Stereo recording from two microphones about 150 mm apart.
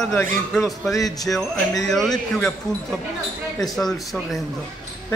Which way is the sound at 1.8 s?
Centre (ahead or behind).